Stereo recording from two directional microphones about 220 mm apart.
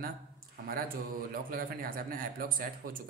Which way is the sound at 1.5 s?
40° right (ahead or behind).